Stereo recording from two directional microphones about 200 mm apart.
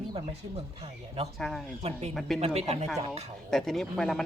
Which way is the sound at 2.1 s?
Centre (ahead or behind).